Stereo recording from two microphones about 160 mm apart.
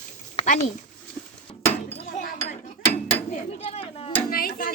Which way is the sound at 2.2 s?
55° left (ahead or behind).